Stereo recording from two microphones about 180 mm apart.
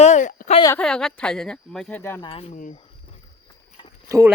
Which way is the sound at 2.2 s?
30° left (ahead or behind).